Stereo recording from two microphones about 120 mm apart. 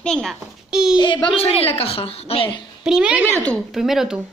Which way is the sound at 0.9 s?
40° left (ahead or behind).